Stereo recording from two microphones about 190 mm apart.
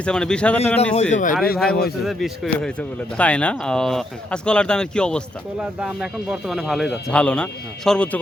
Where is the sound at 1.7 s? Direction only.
55° left (ahead or behind).